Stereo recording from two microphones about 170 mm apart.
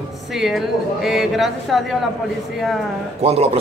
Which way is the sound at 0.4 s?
Centre (ahead or behind).